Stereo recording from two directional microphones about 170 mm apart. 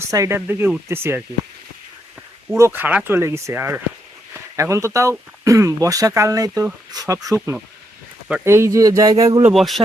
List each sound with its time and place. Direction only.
0.1 s speech: 15° right (ahead or behind)
2.6 s speech: 15° right (ahead or behind)
9.5 s a man's voice: centre (ahead or behind)